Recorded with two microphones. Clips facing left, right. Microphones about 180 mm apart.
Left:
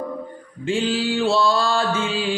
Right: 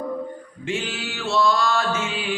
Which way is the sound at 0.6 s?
30° left (ahead or behind).